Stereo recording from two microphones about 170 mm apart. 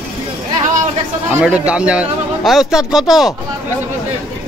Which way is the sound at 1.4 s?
5° right (ahead or behind).